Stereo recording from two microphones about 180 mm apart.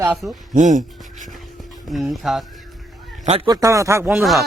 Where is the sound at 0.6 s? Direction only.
45° right (ahead or behind).